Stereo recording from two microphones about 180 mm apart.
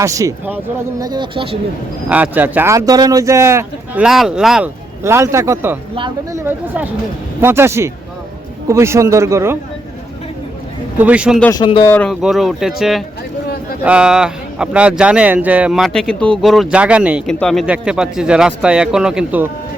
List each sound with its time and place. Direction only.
0.0 s speech: 15° right (ahead or behind)
1.0 s speech: 25° right (ahead or behind)
2.0 s speech: 10° right (ahead or behind)
4.0 s speech: centre (ahead or behind)
5.0 s speech: 15° right (ahead or behind)
10.9 s speech: 10° right (ahead or behind)
11.5 s speech: 25° left (ahead or behind)
11.9 s speech: 10° left (ahead or behind)